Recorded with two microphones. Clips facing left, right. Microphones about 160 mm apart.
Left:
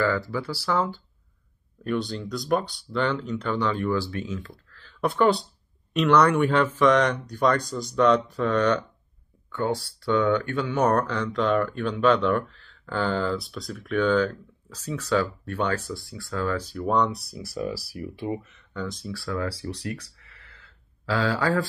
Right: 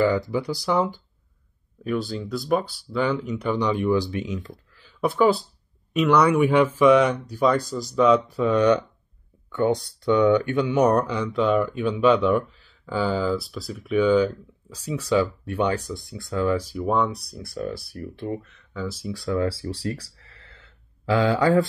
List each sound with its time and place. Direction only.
0.0 s speech: 20° right (ahead or behind)
1.9 s speech: 5° right (ahead or behind); by 21.6 s 20° right (ahead or behind)